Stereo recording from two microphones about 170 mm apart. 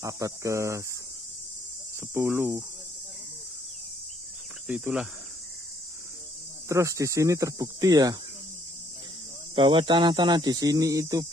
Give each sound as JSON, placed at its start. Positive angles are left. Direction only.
{"t": 0.0, "sound": "cricket", "side_deg": -20}
{"t": 2.0, "sound": "cricket", "side_deg": -15}
{"t": 4.6, "sound": "cricket", "side_deg": -5}
{"t": 6.7, "sound": "speech", "side_deg": -20}
{"t": 9.6, "sound": "speech", "side_deg": -30}